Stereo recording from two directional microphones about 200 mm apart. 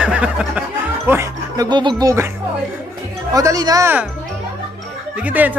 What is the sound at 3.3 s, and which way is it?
Speech, 15° right (ahead or behind).